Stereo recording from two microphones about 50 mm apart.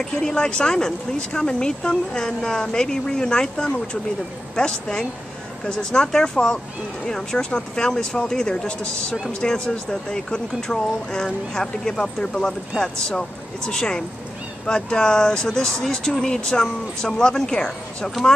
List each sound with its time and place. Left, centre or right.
0.0 s speech: centre